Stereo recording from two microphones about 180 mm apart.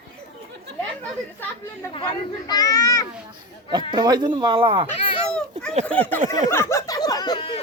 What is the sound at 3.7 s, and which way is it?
Speech, 25° right (ahead or behind).